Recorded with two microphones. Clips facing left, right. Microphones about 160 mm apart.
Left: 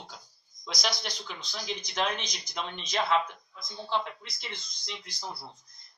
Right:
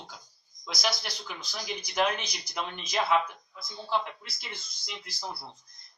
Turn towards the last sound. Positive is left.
turn(degrees=-5)  # may be behind; listen again after turning